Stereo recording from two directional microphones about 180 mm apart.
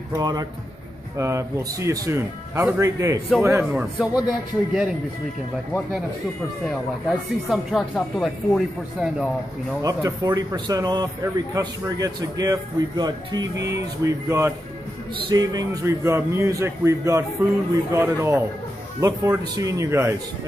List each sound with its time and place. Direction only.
0.1 s speech: 20° right (ahead or behind); by 4.9 s 5° right (ahead or behind)
6.6 s speech: centre (ahead or behind)
9.8 s speech: 20° right (ahead or behind)